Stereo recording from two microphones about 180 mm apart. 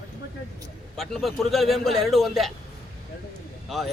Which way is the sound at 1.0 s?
Centre (ahead or behind).